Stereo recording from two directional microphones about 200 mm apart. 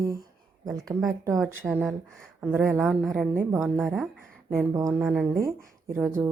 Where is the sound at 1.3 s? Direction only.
5° right (ahead or behind).